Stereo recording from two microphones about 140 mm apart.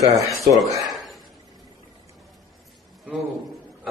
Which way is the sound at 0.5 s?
25° right (ahead or behind).